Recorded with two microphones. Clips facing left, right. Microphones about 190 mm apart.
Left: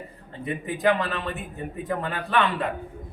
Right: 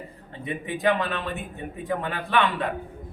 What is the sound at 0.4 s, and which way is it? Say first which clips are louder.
A man's voice: left 1 dB; centre (ahead or behind).